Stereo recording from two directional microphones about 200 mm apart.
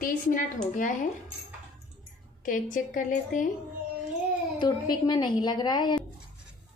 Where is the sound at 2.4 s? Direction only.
40° left (ahead or behind).